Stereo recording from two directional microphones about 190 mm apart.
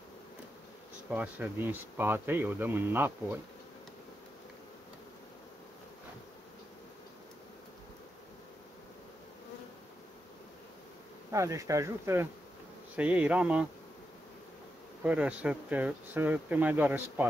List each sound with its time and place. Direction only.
1.1 s speech: 5° right (ahead or behind)
11.3 s speech: 15° right (ahead or behind)
15.0 s speech: 5° right (ahead or behind)